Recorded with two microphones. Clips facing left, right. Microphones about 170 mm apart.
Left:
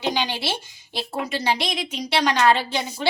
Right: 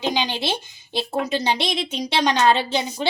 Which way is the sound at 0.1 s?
20° right (ahead or behind).